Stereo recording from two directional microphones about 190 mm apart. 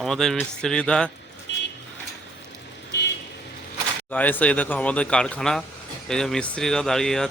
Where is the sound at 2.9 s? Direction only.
65° left (ahead or behind).